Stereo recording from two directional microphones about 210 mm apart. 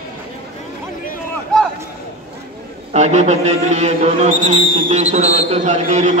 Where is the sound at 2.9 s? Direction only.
35° right (ahead or behind).